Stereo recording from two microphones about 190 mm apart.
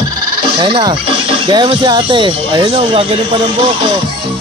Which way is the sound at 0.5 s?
25° right (ahead or behind).